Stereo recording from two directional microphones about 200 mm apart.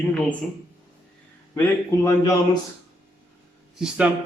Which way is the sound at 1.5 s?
15° left (ahead or behind).